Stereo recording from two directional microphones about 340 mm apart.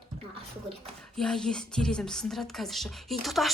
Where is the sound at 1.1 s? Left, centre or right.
Centre.